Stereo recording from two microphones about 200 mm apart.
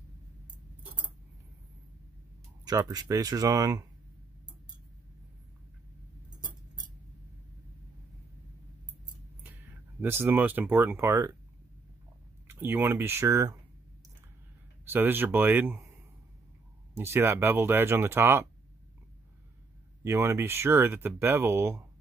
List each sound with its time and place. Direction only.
2.6 s speech: 20° right (ahead or behind)
9.4 s speech: 10° right (ahead or behind)
12.4 s speech: 10° right (ahead or behind)
14.9 s speech: 10° right (ahead or behind)
20.0 s speech: 10° right (ahead or behind)